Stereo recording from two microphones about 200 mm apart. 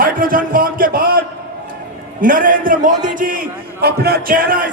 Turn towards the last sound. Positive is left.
turn(degrees=-45)  # may be behind; listen again after turning